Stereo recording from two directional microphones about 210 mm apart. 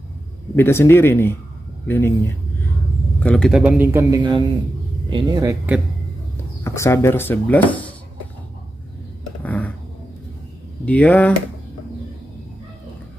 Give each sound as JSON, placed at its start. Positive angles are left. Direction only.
{"t": 0.6, "sound": "speech", "side_deg": 10}
{"t": 4.2, "sound": "a man's voice", "side_deg": -20}
{"t": 6.6, "sound": "speech", "side_deg": 15}
{"t": 9.4, "sound": "a sound", "side_deg": 5}
{"t": 10.9, "sound": "speech", "side_deg": 5}